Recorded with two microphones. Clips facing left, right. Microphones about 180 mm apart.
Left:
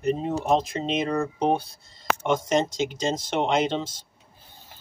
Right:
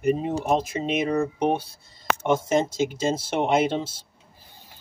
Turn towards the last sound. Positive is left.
turn(degrees=-10)  # may be behind; listen again after turning